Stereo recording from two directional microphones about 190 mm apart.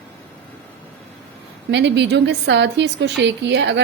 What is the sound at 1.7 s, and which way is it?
A woman's voice, 65° right (ahead or behind).